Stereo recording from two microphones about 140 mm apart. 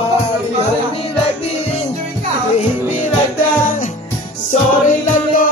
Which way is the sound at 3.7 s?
65° left (ahead or behind).